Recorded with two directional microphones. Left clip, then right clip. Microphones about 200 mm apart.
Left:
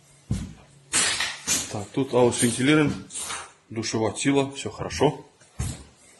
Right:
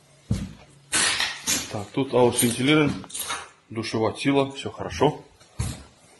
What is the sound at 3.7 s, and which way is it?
Speech, 15° left (ahead or behind).